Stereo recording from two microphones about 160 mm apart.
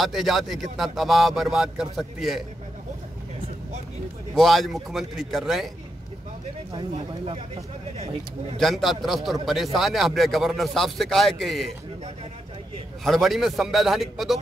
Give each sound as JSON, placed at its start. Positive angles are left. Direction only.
{"t": 0.0, "sound": "speech", "side_deg": 0}
{"t": 4.4, "sound": "speech", "side_deg": 0}
{"t": 6.9, "sound": "speech", "side_deg": -40}
{"t": 8.5, "sound": "speech", "side_deg": 0}
{"t": 13.0, "sound": "speech", "side_deg": 0}